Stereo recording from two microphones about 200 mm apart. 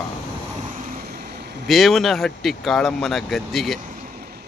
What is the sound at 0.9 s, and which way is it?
Vehicle, 45° right (ahead or behind).